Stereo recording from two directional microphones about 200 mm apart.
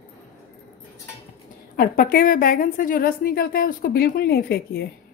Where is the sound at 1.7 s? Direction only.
45° left (ahead or behind).